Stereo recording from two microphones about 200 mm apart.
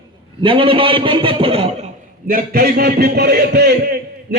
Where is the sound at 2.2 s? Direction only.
45° right (ahead or behind).